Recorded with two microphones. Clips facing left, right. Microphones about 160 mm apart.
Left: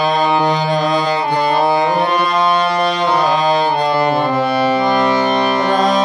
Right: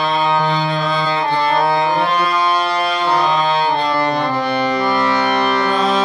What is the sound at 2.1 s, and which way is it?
Music, 20° left (ahead or behind).